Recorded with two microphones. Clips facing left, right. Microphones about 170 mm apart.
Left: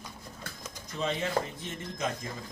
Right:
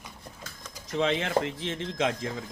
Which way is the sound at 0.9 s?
90° right.